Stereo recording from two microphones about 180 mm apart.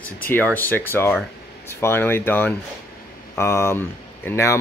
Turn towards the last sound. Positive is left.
turn(degrees=15)  # may be behind; listen again after turning